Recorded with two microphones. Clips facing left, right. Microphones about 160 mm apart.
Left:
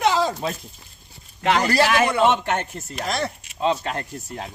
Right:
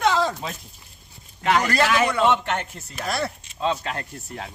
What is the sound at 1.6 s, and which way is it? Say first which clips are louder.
Speech: left 2 dB; 35° left (ahead or behind).